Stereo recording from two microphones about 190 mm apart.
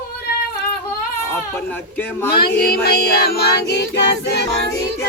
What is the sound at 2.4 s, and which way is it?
Music, 55° left (ahead or behind).